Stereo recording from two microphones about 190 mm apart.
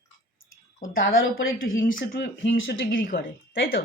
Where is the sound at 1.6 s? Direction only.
50° left (ahead or behind).